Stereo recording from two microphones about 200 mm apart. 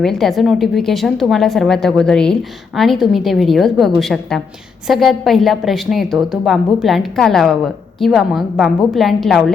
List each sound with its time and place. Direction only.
0.0 s a woman's voice: centre (ahead or behind)